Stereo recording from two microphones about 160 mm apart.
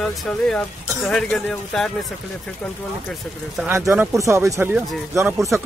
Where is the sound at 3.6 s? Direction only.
15° right (ahead or behind).